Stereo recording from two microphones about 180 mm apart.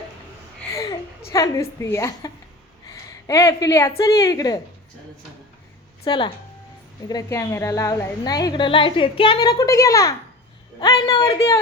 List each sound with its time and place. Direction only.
0.7 s a sound: 15° left (ahead or behind)
2.8 s a woman's voice: 20° left (ahead or behind)
6.1 s a woman's voice: 25° left (ahead or behind)